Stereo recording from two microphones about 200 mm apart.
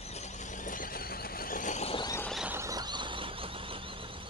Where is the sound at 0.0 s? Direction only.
35° left (ahead or behind).